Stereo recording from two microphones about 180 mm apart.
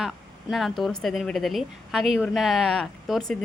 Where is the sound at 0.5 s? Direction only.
Centre (ahead or behind).